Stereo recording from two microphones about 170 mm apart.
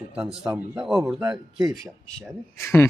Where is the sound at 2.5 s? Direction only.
15° left (ahead or behind).